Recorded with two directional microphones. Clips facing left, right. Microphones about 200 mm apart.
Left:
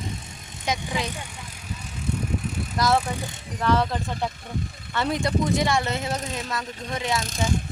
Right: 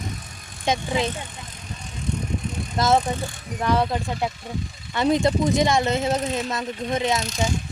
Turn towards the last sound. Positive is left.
turn(degrees=50)  # may be behind; listen again after turning